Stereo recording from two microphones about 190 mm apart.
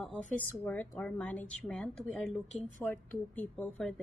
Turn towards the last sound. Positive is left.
turn(degrees=5)  # may be behind; listen again after turning